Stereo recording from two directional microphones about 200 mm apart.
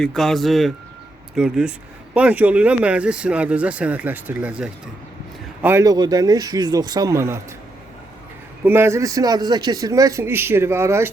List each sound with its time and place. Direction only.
0.0 s speech: centre (ahead or behind); by 7.3 s 15° right (ahead or behind)
8.6 s speech: 10° right (ahead or behind)